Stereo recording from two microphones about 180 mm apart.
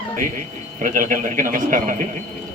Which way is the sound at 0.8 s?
50° right (ahead or behind).